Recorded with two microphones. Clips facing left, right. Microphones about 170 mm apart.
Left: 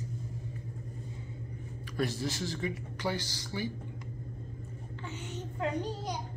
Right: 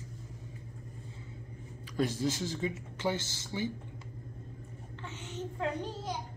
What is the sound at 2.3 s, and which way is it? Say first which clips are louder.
Speech: even; 10° right (ahead or behind).